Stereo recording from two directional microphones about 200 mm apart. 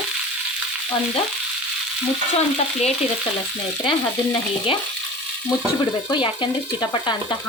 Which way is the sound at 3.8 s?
25° left (ahead or behind).